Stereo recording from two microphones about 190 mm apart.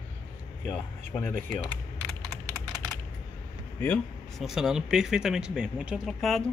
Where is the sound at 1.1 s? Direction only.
5° left (ahead or behind).